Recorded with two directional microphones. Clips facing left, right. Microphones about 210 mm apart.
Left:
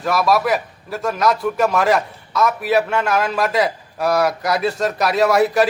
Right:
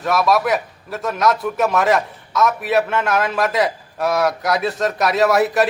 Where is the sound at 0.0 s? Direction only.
Centre (ahead or behind).